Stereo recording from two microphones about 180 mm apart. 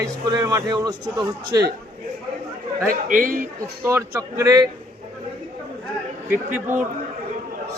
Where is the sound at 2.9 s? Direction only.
50° right (ahead or behind).